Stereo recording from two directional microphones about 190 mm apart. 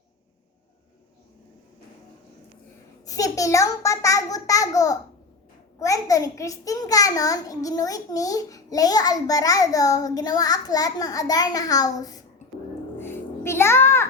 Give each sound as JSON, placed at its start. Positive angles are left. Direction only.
{"t": 3.1, "sound": "a child's voice", "side_deg": 15}
{"t": 13.0, "sound": "music", "side_deg": 10}